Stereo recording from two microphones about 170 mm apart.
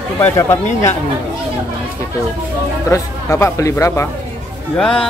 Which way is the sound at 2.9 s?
15° left (ahead or behind).